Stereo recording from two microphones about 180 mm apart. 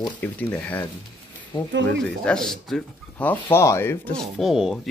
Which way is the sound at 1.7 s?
90° right.